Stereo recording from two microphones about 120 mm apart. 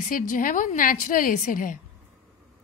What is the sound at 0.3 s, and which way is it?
A woman's voice, 90° left.